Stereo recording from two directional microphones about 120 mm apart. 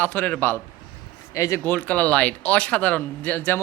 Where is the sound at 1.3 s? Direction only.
25° left (ahead or behind).